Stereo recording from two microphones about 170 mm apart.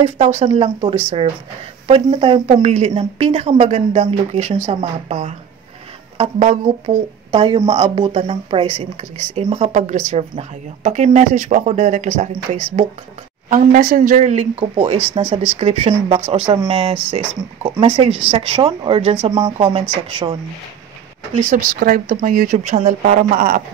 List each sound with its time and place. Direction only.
0.0 s speech: 40° right (ahead or behind)
2.6 s speech: 45° right (ahead or behind)
2.9 s speech: 30° right (ahead or behind)
21.5 s speech: 55° right (ahead or behind)